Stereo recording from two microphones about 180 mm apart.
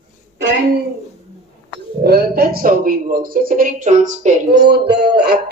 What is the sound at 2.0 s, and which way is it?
Speech, 60° right (ahead or behind).